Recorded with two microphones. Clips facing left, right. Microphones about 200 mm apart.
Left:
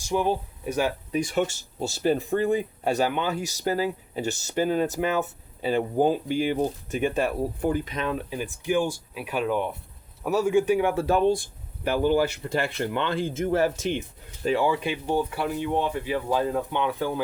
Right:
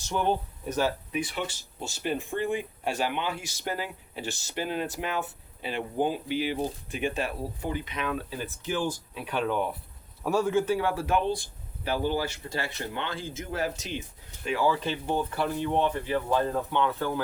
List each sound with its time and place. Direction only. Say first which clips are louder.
0.0 s speech: left 3 dB; 10° left (ahead or behind)
1.1 s speech: left 7 dB; 45° left (ahead or behind)
8.3 s speech: left 6 dB; 15° left (ahead or behind)
11.9 s speech: left 6 dB; 50° left (ahead or behind)
14.6 s speech: left 2 dB; 15° left (ahead or behind)